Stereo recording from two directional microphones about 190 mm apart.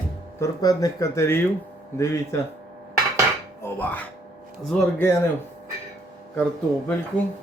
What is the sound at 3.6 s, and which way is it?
Speech, 10° left (ahead or behind).